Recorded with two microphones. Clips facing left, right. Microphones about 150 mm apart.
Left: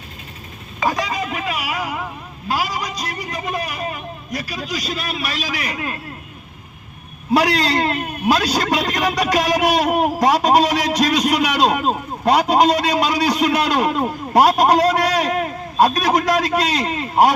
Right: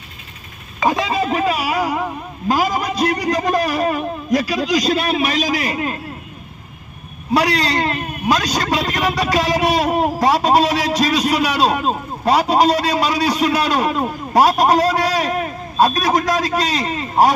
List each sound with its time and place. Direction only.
0.9 s a sound: 25° right (ahead or behind)
2.5 s a man's voice: 45° right (ahead or behind); by 5.2 s 80° right
5.2 s a man's voice: 45° right (ahead or behind); by 6.0 s 25° right (ahead or behind)
7.3 s speech: centre (ahead or behind)